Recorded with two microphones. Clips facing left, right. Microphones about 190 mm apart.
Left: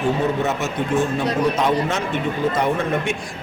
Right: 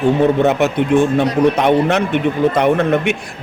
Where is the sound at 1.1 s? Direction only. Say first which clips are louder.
Right 6 dB; 65° right (ahead or behind).